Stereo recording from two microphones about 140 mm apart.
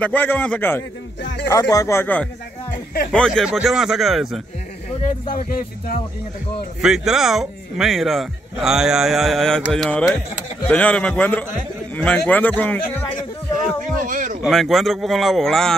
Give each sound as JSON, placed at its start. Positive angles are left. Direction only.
{"t": 0.0, "sound": "a man's voice", "side_deg": 10}
{"t": 2.7, "sound": "speech", "side_deg": 90}
{"t": 3.1, "sound": "speech", "side_deg": 5}
{"t": 6.8, "sound": "a man's voice", "side_deg": -5}
{"t": 14.0, "sound": "a sound", "side_deg": -70}
{"t": 14.4, "sound": "speech", "side_deg": 0}